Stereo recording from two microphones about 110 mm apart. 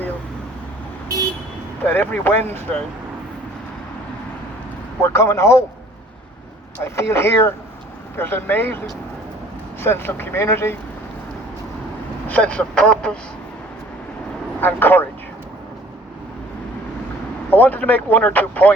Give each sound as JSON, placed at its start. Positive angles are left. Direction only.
{"t": 1.8, "sound": "speech", "side_deg": 15}
{"t": 5.0, "sound": "speech", "side_deg": 25}
{"t": 6.7, "sound": "speech", "side_deg": 20}
{"t": 9.8, "sound": "speech", "side_deg": 20}
{"t": 12.3, "sound": "speech", "side_deg": 10}
{"t": 14.6, "sound": "speech", "side_deg": 20}
{"t": 17.5, "sound": "speech", "side_deg": 15}